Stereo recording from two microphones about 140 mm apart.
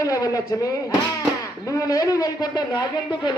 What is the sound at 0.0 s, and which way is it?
Speech, 25° left (ahead or behind).